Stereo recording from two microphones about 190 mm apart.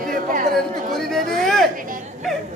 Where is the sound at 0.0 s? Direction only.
45° right (ahead or behind).